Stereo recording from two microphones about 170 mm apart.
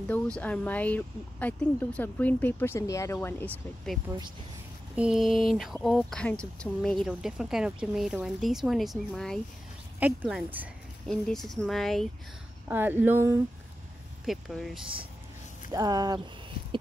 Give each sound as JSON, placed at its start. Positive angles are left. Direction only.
{"t": 0.1, "sound": "speech", "side_deg": 10}
{"t": 10.0, "sound": "speech", "side_deg": -10}
{"t": 11.1, "sound": "speech", "side_deg": 0}
{"t": 12.6, "sound": "speech", "side_deg": -10}
{"t": 14.2, "sound": "speech", "side_deg": 0}
{"t": 15.7, "sound": "speech", "side_deg": -20}